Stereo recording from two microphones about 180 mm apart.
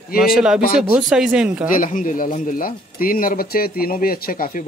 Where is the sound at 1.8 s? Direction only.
50° left (ahead or behind).